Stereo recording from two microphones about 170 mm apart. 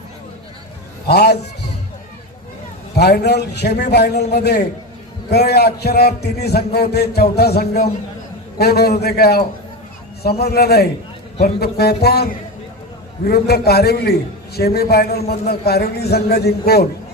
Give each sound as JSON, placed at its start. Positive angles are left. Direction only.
{"t": 1.0, "sound": "a man's voice", "side_deg": 70}
{"t": 3.0, "sound": "a man's voice", "side_deg": 75}